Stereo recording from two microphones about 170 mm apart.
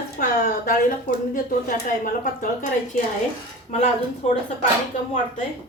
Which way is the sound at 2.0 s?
50° left (ahead or behind).